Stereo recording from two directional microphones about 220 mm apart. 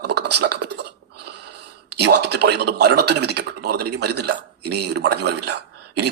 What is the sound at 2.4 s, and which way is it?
Speech, 50° right (ahead or behind).